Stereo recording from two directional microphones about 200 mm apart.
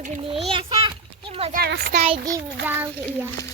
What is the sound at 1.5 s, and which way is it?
Speech, 50° right (ahead or behind).